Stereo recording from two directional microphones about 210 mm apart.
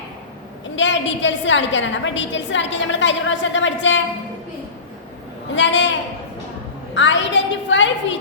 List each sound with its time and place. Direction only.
0.8 s a woman's voice: 60° left (ahead or behind)
5.5 s a woman's voice: 60° left (ahead or behind)